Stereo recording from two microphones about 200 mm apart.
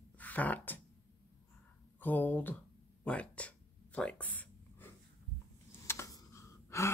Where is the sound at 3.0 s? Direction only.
5° left (ahead or behind).